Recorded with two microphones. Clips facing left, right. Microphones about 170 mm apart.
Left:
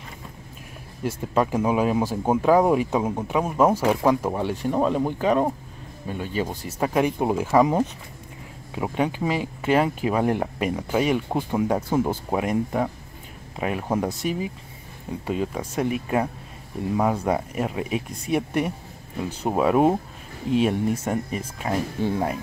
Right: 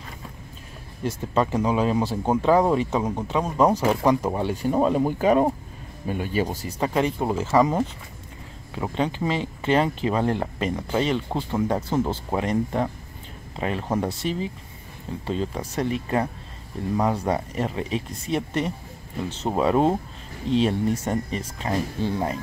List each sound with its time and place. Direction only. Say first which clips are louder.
1.0 s speech: left 1 dB; 10° left (ahead or behind); by 6.7 s 10° right (ahead or behind)
6.8 s speech: left 2 dB; 10° left (ahead or behind)